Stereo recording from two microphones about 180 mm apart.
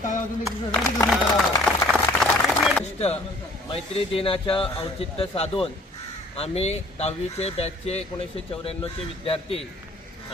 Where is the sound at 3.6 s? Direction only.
35° left (ahead or behind).